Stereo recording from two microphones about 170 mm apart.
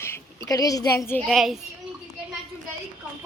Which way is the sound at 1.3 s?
Centre (ahead or behind).